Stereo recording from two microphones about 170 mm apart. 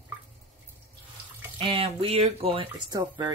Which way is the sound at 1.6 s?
30° right (ahead or behind).